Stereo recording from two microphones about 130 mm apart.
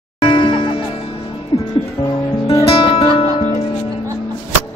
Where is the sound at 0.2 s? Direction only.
35° left (ahead or behind).